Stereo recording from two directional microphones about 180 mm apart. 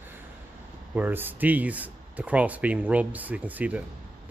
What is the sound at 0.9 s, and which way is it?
Speech, 10° right (ahead or behind).